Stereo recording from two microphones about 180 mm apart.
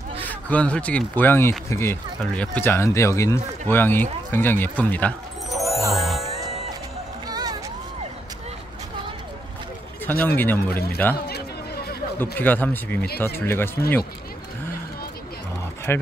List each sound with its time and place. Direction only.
0.2 s speech: 10° left (ahead or behind)
5.9 s music: centre (ahead or behind)
7.2 s music: 20° right (ahead or behind)
10.0 s speech: 10° left (ahead or behind)
11.1 s a sound: 60° left (ahead or behind)
12.2 s speech: 10° left (ahead or behind)
15.9 s speech: 10° left (ahead or behind)